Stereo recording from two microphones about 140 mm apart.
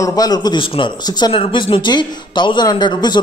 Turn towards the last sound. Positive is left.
turn(degrees=30)  # may be behind; listen again after turning